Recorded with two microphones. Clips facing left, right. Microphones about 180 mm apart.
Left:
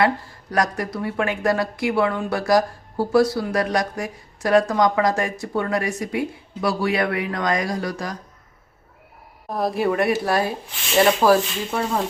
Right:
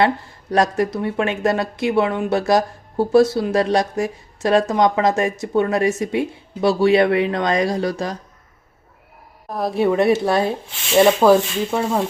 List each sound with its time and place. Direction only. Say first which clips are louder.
0.5 s speech: right 5 dB; 25° right (ahead or behind)
9.5 s a woman's voice: right 3 dB; centre (ahead or behind)
9.9 s speech: right 4 dB; 25° right (ahead or behind)